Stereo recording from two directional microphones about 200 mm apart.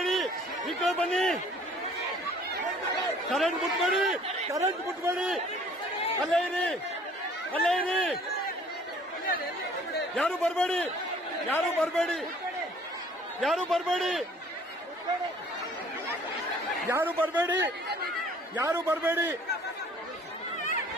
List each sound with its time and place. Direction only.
0.0 s a sound: centre (ahead or behind)
3.3 s speech: centre (ahead or behind)
4.5 s a man's voice: 15° right (ahead or behind)
6.2 s speech: centre (ahead or behind)
10.1 s speech: 5° left (ahead or behind)
13.4 s speech: centre (ahead or behind)
16.9 s a man's voice: 10° right (ahead or behind)